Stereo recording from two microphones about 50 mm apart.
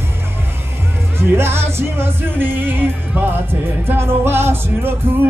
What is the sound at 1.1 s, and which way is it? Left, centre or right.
Music, right.